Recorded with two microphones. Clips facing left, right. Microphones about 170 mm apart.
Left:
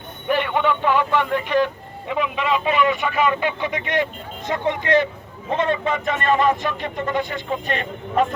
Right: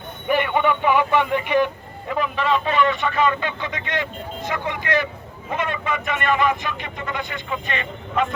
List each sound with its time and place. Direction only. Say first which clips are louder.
0.3 s speech: even; 5° right (ahead or behind)
2.3 s speech: right 1 dB; 5° left (ahead or behind); by 8.3 s 40° left (ahead or behind)